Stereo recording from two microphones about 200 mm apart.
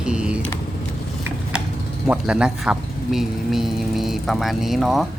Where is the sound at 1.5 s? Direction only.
5° right (ahead or behind).